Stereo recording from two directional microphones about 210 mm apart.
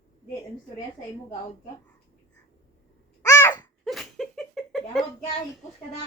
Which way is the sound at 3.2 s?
15° left (ahead or behind).